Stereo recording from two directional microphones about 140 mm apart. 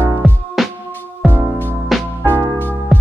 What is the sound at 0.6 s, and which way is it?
Music, centre (ahead or behind).